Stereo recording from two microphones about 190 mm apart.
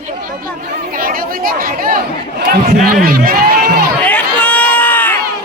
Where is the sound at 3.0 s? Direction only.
50° right (ahead or behind).